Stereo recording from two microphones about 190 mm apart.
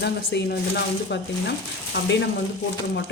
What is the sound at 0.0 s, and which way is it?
Speech, 60° left (ahead or behind).